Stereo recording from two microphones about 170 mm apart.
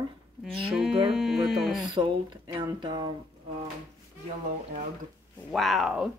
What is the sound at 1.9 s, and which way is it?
Speech, 25° right (ahead or behind).